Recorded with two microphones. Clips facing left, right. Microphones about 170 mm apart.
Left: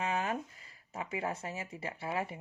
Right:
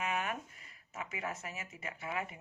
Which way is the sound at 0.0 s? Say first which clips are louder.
Left 3 dB; 30° left (ahead or behind).